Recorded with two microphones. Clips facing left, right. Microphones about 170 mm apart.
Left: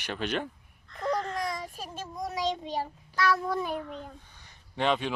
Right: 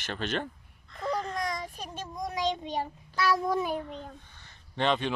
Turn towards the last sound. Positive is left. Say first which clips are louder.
# even
turn(degrees=5)  # may be behind; listen again after turning